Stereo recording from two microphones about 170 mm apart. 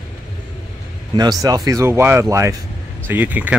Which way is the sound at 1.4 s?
20° right (ahead or behind).